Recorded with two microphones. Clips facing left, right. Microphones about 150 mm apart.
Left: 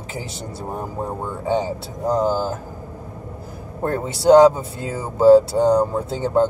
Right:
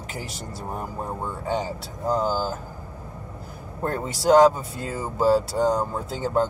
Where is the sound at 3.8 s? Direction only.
20° left (ahead or behind).